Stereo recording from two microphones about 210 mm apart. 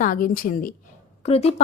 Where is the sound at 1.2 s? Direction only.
30° left (ahead or behind).